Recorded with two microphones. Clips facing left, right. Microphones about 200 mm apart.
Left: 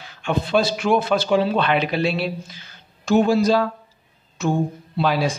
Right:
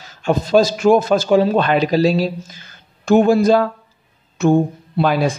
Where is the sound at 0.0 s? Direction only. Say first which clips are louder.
Right 5 dB; 40° right (ahead or behind).